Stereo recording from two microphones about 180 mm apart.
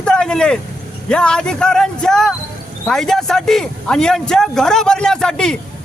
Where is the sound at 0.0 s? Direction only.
5° left (ahead or behind).